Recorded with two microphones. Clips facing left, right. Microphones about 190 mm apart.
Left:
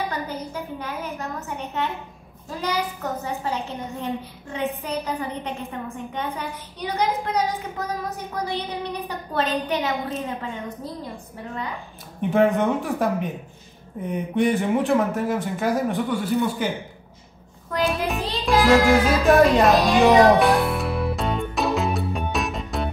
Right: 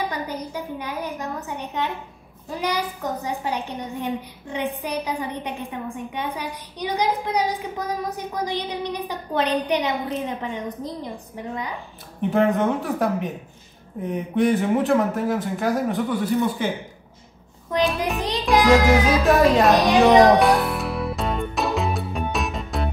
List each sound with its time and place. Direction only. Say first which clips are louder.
0.1 s a child's voice: right 1 dB; 15° right (ahead or behind)
12.2 s speech: left 1 dB; centre (ahead or behind)
17.8 s child singing: left 2 dB; centre (ahead or behind)
18.5 s music: right 1 dB; 15° right (ahead or behind)
18.8 s music: even; centre (ahead or behind)